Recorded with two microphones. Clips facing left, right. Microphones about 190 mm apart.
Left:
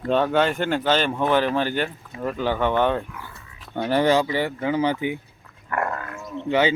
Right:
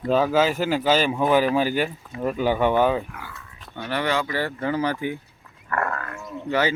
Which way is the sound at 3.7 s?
40° left (ahead or behind).